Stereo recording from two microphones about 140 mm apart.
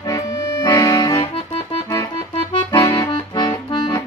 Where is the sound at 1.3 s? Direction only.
50° left (ahead or behind).